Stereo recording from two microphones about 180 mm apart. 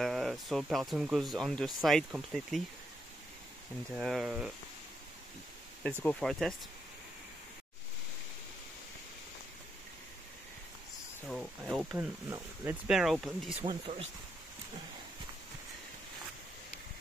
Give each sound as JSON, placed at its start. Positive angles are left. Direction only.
{"t": 0.0, "sound": "speech", "side_deg": 0}
{"t": 3.9, "sound": "speech", "side_deg": 0}
{"t": 6.0, "sound": "speech", "side_deg": 0}
{"t": 11.2, "sound": "speech", "side_deg": 0}
{"t": 12.3, "sound": "speech", "side_deg": -10}
{"t": 12.9, "sound": "speech", "side_deg": 0}
{"t": 13.7, "sound": "speech", "side_deg": -30}